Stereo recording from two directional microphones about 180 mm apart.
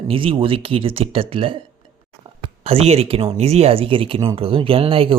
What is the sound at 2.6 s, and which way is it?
Speech, 35° right (ahead or behind).